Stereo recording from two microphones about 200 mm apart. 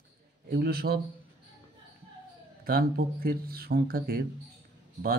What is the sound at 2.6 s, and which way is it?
Speech, 50° right (ahead or behind).